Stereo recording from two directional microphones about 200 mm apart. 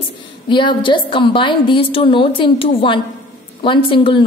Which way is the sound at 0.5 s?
25° left (ahead or behind).